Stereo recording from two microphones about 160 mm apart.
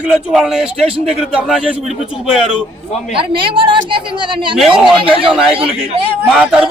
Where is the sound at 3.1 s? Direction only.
35° right (ahead or behind).